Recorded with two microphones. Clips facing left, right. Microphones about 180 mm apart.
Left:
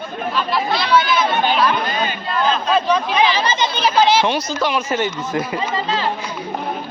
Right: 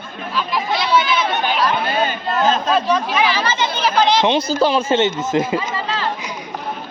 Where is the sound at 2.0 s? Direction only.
45° right (ahead or behind).